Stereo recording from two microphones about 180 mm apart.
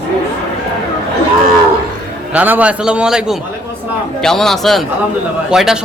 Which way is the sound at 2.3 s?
10° right (ahead or behind).